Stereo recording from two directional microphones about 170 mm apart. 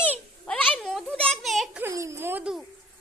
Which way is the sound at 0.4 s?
5° left (ahead or behind).